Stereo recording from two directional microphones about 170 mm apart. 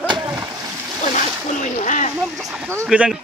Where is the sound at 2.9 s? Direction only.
5° right (ahead or behind).